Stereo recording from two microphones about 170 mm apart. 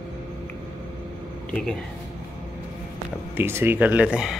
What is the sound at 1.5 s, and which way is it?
Speech, 5° left (ahead or behind).